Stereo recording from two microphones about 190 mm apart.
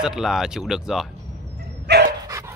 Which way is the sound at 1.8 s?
60° right (ahead or behind).